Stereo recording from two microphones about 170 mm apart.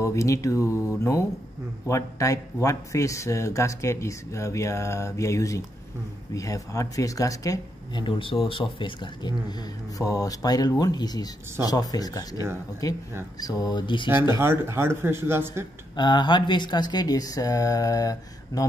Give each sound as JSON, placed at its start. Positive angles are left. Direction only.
{"t": 0.0, "sound": "speech", "side_deg": 20}
{"t": 14.0, "sound": "speech", "side_deg": -15}
{"t": 16.0, "sound": "speech", "side_deg": 25}